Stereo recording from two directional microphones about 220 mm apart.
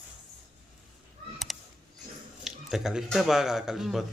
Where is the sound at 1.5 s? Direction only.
Centre (ahead or behind).